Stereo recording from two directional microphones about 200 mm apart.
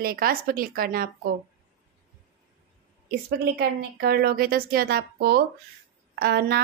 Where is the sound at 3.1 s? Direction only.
50° right (ahead or behind).